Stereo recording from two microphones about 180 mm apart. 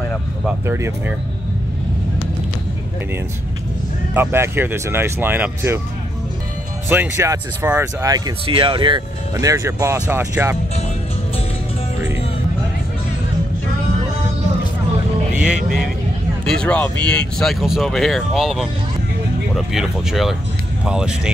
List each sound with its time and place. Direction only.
0.5 s speech: 10° right (ahead or behind)
4.1 s speech: 10° right (ahead or behind)
6.9 s speech: 15° right (ahead or behind)
8.5 s speech: 30° right (ahead or behind); by 10.6 s 15° right (ahead or behind)
15.3 s music: 5° right (ahead or behind)
16.4 s speech: 5° left (ahead or behind)